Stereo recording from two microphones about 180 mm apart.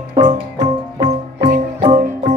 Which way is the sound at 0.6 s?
20° right (ahead or behind).